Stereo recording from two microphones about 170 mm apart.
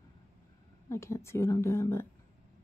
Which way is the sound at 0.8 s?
15° left (ahead or behind).